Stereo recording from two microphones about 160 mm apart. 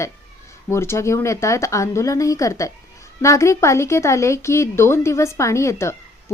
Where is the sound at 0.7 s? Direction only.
15° left (ahead or behind).